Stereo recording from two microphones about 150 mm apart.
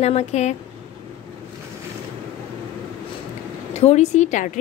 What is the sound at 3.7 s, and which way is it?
Speech, 45° left (ahead or behind).